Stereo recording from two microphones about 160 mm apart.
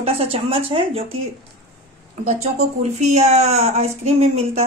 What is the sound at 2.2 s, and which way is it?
A woman's voice, 45° right (ahead or behind).